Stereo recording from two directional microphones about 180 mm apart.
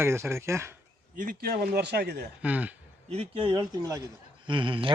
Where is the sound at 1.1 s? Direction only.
55° right (ahead or behind).